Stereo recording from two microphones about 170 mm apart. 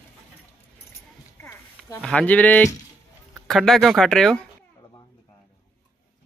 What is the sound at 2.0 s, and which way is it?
Speech, 10° left (ahead or behind).